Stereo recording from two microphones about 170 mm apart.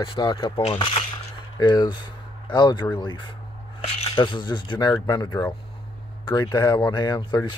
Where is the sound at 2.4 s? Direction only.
25° left (ahead or behind).